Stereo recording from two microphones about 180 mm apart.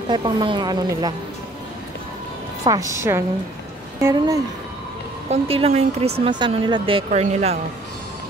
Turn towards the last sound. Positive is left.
turn(degrees=-35)  # may be behind; listen again after turning